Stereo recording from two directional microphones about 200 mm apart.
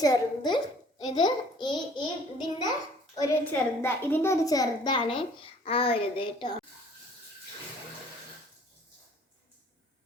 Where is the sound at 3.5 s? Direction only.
10° left (ahead or behind).